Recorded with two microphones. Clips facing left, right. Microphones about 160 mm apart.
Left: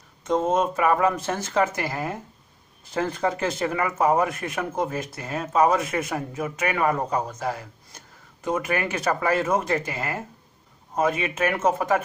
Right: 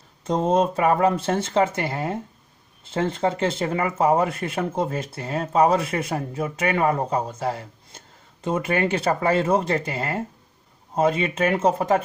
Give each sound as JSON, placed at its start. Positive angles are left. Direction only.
{"t": 0.2, "sound": "speech", "side_deg": -30}